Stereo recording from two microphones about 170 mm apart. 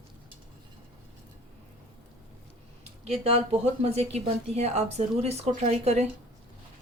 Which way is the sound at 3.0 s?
35° right (ahead or behind).